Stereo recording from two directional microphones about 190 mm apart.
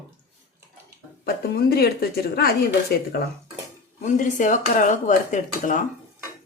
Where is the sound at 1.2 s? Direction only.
55° left (ahead or behind).